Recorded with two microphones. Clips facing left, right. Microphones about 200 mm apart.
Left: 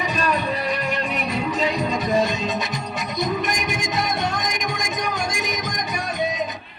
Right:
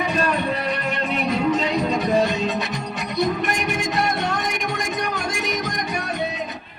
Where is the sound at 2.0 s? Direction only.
65° right (ahead or behind).